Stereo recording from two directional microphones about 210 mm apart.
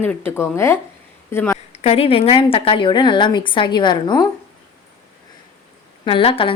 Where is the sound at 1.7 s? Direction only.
30° left (ahead or behind).